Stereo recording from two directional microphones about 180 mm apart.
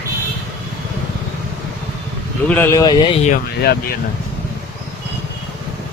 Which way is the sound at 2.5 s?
15° left (ahead or behind).